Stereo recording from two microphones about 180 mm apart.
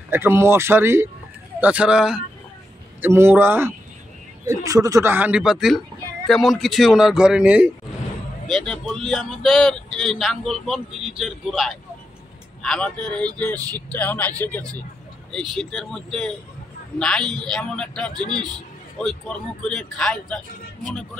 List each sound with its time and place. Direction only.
0.1 s speech: 10° right (ahead or behind); by 18.2 s 5° left (ahead or behind)
18.2 s a man's voice: 25° right (ahead or behind)
19.0 s speech: 5° left (ahead or behind)